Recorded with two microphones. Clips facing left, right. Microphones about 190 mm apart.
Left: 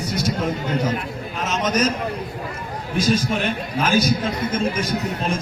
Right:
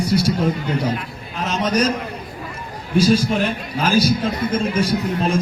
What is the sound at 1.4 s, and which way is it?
Speech, 35° right (ahead or behind).